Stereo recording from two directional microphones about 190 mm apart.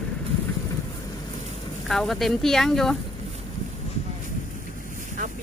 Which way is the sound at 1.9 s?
Centre (ahead or behind).